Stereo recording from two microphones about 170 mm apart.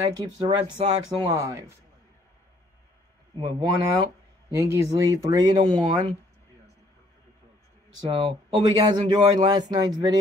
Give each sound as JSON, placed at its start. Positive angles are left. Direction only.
{"t": 0.0, "sound": "speech", "side_deg": -25}
{"t": 3.5, "sound": "speech", "side_deg": -25}
{"t": 8.1, "sound": "speech", "side_deg": -30}